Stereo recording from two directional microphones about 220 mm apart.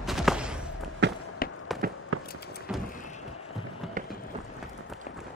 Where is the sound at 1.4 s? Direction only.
40° left (ahead or behind).